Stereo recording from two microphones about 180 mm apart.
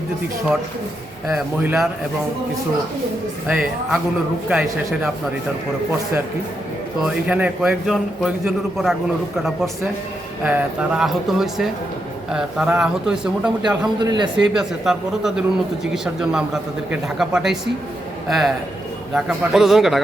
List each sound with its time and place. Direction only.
1.4 s a man's voice: 5° right (ahead or behind)
3.4 s a man's voice: centre (ahead or behind)
7.0 s a man's voice: 5° right (ahead or behind)
10.4 s a man's voice: 5° right (ahead or behind)
14.0 s a man's voice: 25° right (ahead or behind)
14.5 s a man's voice: centre (ahead or behind)